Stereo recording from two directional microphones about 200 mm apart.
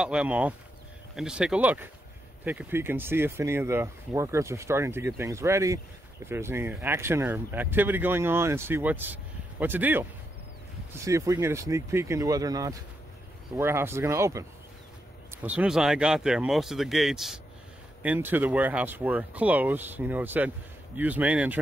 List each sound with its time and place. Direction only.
0.0 s speech: 5° right (ahead or behind)
11.1 s speech: 15° right (ahead or behind)